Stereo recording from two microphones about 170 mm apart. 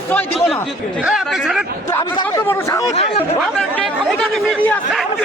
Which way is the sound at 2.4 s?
15° left (ahead or behind).